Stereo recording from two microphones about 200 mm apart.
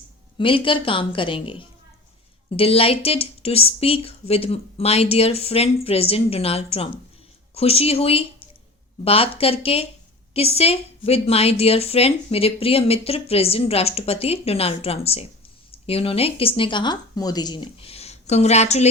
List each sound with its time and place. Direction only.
0.3 s a woman's voice: 25° left (ahead or behind)